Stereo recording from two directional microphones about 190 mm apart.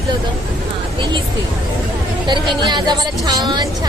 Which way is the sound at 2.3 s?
25° right (ahead or behind).